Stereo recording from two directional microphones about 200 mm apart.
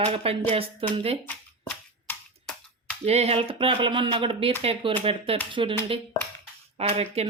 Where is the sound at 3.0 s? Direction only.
30° right (ahead or behind).